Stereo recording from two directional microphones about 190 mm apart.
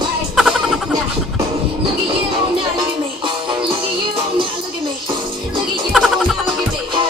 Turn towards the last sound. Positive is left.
turn(degrees=0)  # may be behind; listen again after turning